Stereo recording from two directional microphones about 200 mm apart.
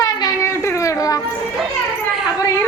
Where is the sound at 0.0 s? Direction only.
15° left (ahead or behind).